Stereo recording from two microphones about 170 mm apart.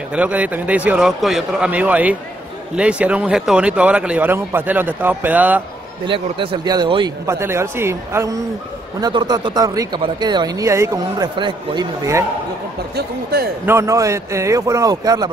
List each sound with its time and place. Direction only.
0.1 s speech: 10° right (ahead or behind)
6.0 s speech: 30° right (ahead or behind)
7.2 s speech: 15° right (ahead or behind)
12.9 s speech: 65° right (ahead or behind)
13.7 s speech: 15° right (ahead or behind)